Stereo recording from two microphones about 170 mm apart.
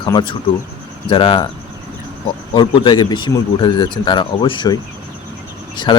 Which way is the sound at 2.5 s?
30° left (ahead or behind).